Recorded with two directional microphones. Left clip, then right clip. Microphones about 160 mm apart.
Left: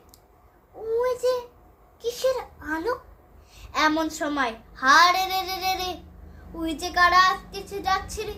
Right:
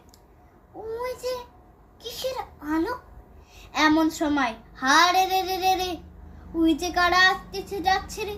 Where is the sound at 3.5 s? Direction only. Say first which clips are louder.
Right 2 dB; 20° left (ahead or behind).